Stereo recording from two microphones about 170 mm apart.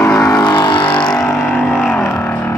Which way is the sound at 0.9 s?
5° left (ahead or behind).